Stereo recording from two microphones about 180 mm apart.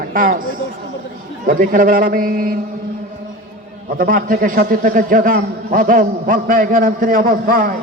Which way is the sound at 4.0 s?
50° right (ahead or behind).